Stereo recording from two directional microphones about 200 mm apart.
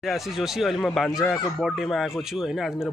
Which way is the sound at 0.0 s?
Centre (ahead or behind).